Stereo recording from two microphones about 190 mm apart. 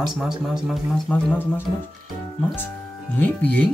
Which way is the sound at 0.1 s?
Centre (ahead or behind).